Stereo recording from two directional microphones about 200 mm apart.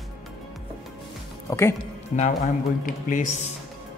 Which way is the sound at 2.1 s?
40° left (ahead or behind).